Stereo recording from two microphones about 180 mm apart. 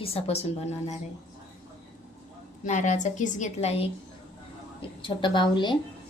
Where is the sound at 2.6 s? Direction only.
40° left (ahead or behind); by 5.8 s 25° left (ahead or behind).